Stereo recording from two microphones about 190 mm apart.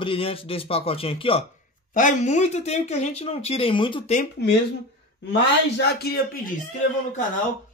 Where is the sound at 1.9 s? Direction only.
40° left (ahead or behind).